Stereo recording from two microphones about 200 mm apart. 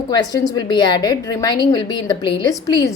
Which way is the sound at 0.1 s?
20° left (ahead or behind).